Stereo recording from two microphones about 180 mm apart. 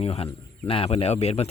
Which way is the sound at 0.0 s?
35° left (ahead or behind).